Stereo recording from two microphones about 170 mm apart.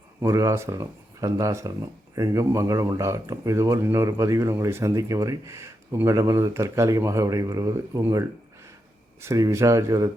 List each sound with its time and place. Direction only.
0.2 s speech: 20° right (ahead or behind)
9.2 s speech: 15° right (ahead or behind)